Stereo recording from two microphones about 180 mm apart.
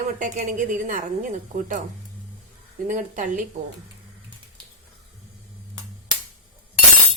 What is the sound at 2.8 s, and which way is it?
Speech, 45° right (ahead or behind).